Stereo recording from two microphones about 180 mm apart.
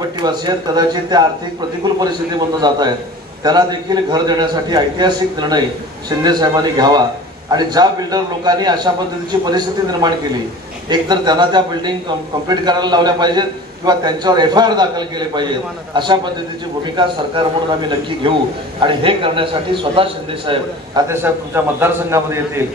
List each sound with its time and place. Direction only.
0.2 s a man's voice: 25° right (ahead or behind)
21.1 s a man's voice: 10° right (ahead or behind)